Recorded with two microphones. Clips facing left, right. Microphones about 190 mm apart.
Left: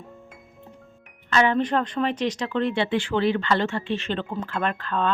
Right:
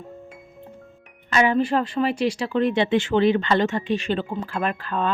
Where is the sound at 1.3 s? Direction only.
10° right (ahead or behind).